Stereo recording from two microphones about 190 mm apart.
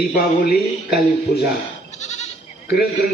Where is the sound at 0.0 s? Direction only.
50° left (ahead or behind).